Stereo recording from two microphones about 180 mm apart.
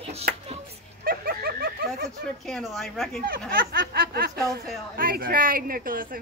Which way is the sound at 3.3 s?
55° right (ahead or behind).